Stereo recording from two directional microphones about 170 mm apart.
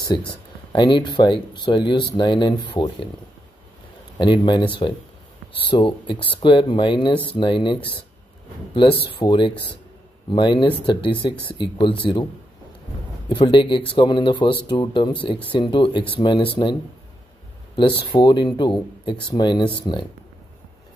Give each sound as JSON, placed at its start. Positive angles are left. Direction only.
{"t": 0.3, "sound": "speech", "side_deg": 25}
{"t": 4.2, "sound": "speech", "side_deg": 25}
{"t": 9.2, "sound": "speech", "side_deg": 25}
{"t": 13.3, "sound": "speech", "side_deg": 30}
{"t": 18.0, "sound": "speech", "side_deg": 30}